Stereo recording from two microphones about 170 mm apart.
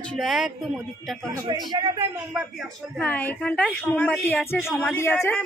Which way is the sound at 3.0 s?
10° left (ahead or behind).